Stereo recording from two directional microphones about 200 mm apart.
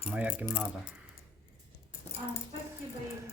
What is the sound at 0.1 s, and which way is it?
Speech, 5° right (ahead or behind).